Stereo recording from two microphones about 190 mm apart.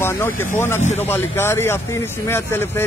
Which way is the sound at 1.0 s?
10° left (ahead or behind).